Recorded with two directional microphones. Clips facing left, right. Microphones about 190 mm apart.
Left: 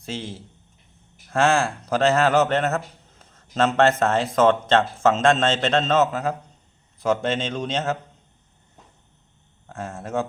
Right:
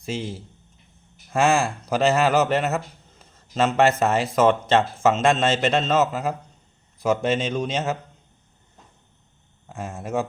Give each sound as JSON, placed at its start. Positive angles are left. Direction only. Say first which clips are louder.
{"t": 0.0, "sound": "speech", "louder": "right 3 dB", "side_deg": -10}
{"t": 1.3, "sound": "a man's voice", "louder": "even", "side_deg": -10}
{"t": 9.6, "sound": "a man's voice", "louder": "right 1 dB", "side_deg": -10}